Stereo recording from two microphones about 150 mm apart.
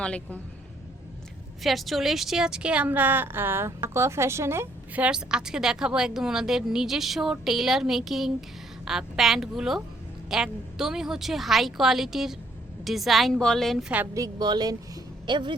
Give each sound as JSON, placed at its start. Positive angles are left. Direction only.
{"t": 0.0, "sound": "a woman's voice", "side_deg": 10}
{"t": 1.6, "sound": "a woman's voice", "side_deg": 0}
{"t": 14.1, "sound": "a woman's voice", "side_deg": -25}